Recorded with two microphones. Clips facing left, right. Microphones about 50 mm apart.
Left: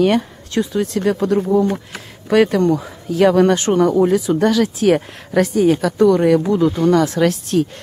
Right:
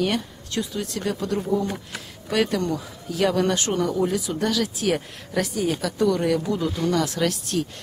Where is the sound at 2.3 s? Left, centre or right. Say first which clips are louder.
Left 9 dB; left.